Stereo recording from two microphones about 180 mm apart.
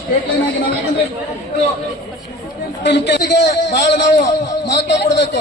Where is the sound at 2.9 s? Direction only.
75° left (ahead or behind).